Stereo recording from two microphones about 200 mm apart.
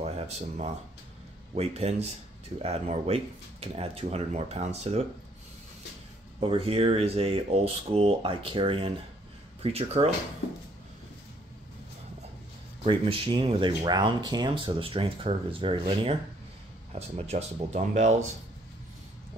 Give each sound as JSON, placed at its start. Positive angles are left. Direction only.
{"t": 0.0, "sound": "speech", "side_deg": -30}
{"t": 6.4, "sound": "speech", "side_deg": -30}
{"t": 12.8, "sound": "speech", "side_deg": -25}